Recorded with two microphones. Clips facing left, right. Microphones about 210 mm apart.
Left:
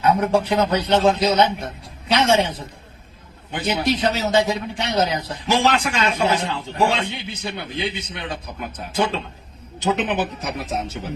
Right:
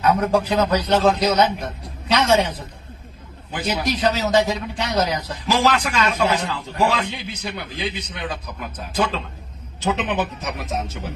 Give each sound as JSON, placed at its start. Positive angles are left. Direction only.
{"t": 0.0, "sound": "a man's voice", "side_deg": 25}